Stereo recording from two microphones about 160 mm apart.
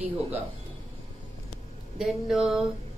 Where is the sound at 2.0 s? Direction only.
5° right (ahead or behind).